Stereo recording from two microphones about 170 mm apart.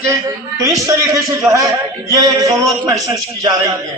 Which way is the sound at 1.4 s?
5° right (ahead or behind).